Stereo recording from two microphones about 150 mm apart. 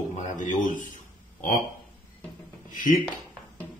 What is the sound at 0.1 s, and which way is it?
Speech, 60° left (ahead or behind).